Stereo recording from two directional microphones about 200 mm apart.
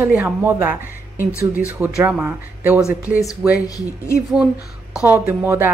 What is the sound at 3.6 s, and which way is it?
Speech, 15° left (ahead or behind).